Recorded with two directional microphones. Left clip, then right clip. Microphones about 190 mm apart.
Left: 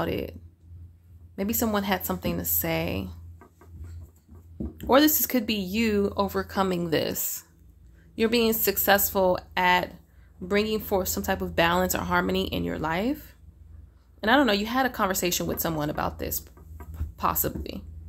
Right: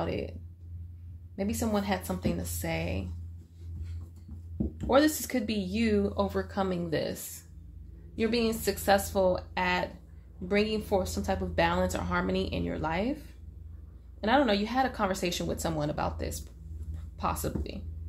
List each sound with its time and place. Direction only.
0.0 s speech: 45° left (ahead or behind)
4.7 s speech: 45° left (ahead or behind)